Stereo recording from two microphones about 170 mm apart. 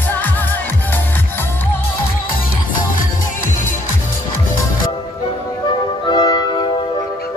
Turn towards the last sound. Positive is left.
turn(degrees=25)  # may be behind; listen again after turning